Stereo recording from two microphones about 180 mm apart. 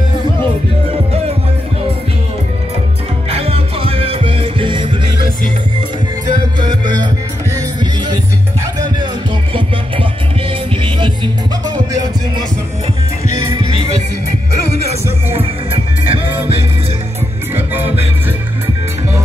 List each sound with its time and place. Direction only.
3.3 s music: 35° right (ahead or behind)
6.6 s music: 25° right (ahead or behind)
11.6 s music: 20° right (ahead or behind)
14.9 s music: 35° right (ahead or behind)